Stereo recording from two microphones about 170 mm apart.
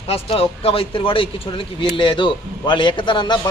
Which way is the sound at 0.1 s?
35° left (ahead or behind).